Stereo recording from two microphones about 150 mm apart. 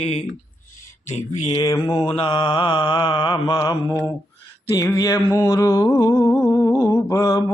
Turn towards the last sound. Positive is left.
turn(degrees=20)  # may be behind; listen again after turning